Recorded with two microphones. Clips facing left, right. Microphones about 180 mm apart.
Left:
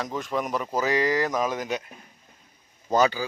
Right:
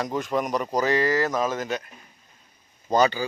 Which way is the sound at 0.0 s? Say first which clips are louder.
Right 3 dB; centre (ahead or behind).